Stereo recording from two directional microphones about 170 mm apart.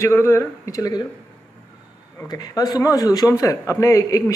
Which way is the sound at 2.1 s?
25° left (ahead or behind).